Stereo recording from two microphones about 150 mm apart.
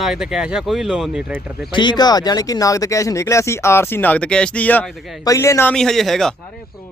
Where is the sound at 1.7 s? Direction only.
30° left (ahead or behind); by 4.9 s 10° left (ahead or behind).